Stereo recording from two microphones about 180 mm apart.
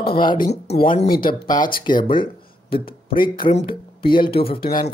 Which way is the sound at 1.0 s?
55° left (ahead or behind).